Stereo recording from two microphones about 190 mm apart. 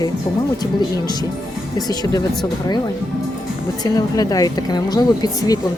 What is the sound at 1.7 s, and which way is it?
Speech, 20° left (ahead or behind).